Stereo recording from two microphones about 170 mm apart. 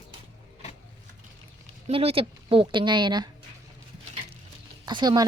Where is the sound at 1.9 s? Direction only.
35° right (ahead or behind).